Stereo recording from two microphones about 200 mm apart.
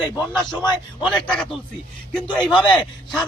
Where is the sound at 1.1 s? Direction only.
5° left (ahead or behind).